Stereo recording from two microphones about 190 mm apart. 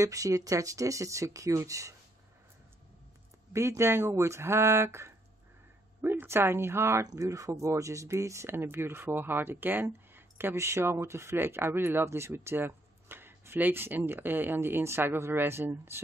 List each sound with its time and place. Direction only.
0.0 s speech: 15° right (ahead or behind)
3.5 s speech: 15° right (ahead or behind)